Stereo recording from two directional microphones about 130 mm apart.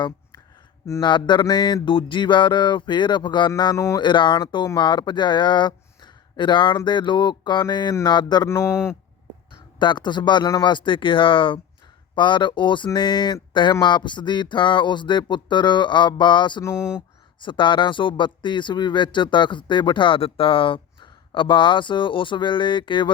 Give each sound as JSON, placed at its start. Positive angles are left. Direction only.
{"t": 1.0, "sound": "speech", "side_deg": 35}
{"t": 3.8, "sound": "speech", "side_deg": 25}
{"t": 4.0, "sound": "speech", "side_deg": 35}
{"t": 8.4, "sound": "speech", "side_deg": 20}
{"t": 9.7, "sound": "speech", "side_deg": 35}